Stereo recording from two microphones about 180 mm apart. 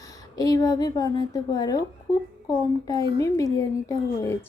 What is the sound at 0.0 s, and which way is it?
A child's voice, 20° left (ahead or behind).